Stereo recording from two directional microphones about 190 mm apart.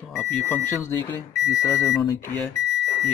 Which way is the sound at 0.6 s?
15° left (ahead or behind).